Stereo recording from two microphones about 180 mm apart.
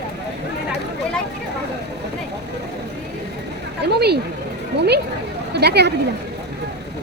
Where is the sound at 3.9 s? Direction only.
65° right (ahead or behind).